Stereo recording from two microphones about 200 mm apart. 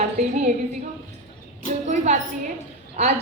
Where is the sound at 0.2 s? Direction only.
35° right (ahead or behind).